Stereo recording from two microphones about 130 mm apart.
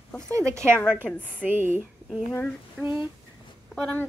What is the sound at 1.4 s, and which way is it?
Speech, 15° right (ahead or behind).